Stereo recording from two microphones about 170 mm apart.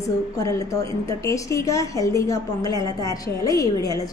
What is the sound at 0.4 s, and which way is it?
A woman's voice, 20° left (ahead or behind).